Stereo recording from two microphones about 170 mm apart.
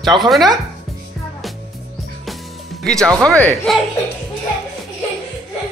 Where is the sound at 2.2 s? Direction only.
Centre (ahead or behind).